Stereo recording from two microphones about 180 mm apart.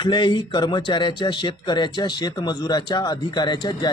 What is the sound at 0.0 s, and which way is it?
Speech, 25° left (ahead or behind).